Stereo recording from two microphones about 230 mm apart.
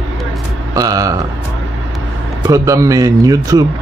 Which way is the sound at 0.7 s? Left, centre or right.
Centre.